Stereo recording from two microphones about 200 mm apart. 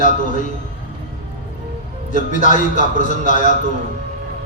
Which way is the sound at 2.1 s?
40° left (ahead or behind).